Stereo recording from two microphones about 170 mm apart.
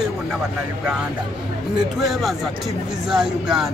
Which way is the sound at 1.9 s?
Centre (ahead or behind).